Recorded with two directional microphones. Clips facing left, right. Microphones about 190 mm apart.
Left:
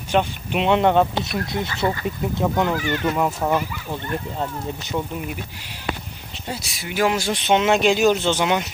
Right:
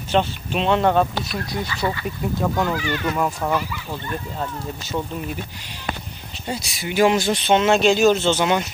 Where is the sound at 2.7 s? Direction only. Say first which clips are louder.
Left 1 dB; 45° left (ahead or behind).